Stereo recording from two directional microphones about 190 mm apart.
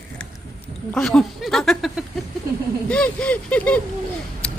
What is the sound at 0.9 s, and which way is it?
Speech, centre (ahead or behind).